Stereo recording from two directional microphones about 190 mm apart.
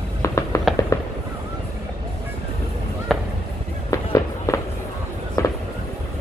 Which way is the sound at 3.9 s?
15° left (ahead or behind).